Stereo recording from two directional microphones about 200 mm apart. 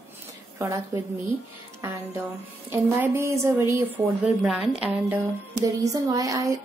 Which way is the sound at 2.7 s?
10° right (ahead or behind).